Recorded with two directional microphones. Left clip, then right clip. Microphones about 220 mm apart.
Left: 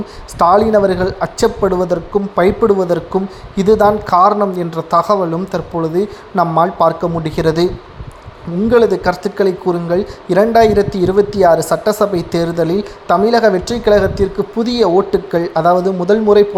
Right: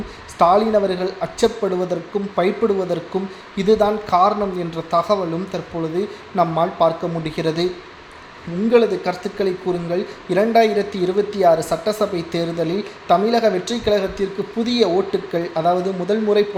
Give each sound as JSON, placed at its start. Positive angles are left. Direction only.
{"t": 0.3, "sound": "speech", "side_deg": 30}
{"t": 8.7, "sound": "speech", "side_deg": 30}